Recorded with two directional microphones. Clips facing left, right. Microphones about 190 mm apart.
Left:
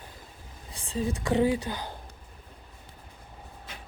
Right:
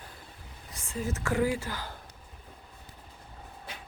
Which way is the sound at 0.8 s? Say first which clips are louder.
Left 5 dB; 30° left (ahead or behind).